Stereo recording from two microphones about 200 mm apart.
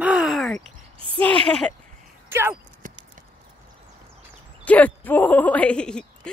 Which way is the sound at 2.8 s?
45° right (ahead or behind).